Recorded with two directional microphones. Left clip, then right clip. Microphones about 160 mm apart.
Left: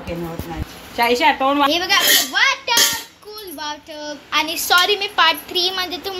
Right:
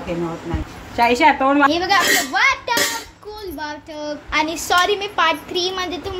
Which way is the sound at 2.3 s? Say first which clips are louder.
Even; 10° right (ahead or behind).